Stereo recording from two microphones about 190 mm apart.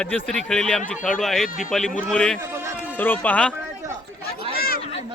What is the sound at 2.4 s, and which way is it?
Run, 15° right (ahead or behind).